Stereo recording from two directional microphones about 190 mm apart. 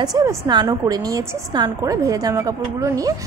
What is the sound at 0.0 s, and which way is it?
A woman's voice, 20° right (ahead or behind).